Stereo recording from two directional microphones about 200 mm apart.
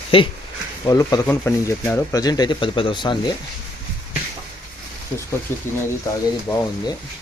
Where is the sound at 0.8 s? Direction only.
15° left (ahead or behind).